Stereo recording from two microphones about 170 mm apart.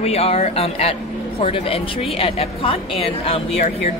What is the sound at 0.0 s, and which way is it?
A woman's voice, 35° left (ahead or behind).